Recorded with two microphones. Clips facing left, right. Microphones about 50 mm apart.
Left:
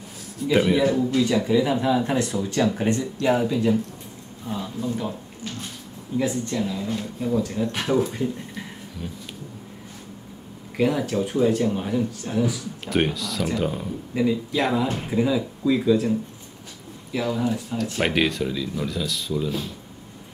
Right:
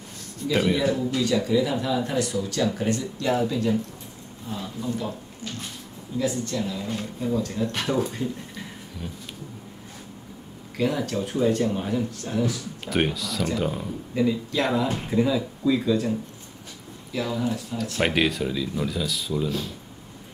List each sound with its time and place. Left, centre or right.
0.4 s speech: centre
6.6 s speech: centre
10.8 s speech: centre
18.0 s speech: centre